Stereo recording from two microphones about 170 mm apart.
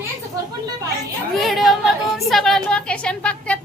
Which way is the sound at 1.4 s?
Centre (ahead or behind).